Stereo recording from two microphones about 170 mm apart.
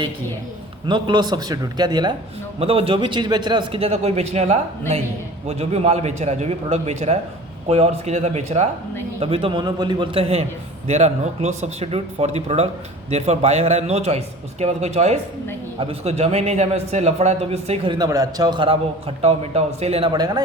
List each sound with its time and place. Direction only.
0.9 s a man's voice: 25° right (ahead or behind)
17.9 s a man's voice: 20° right (ahead or behind)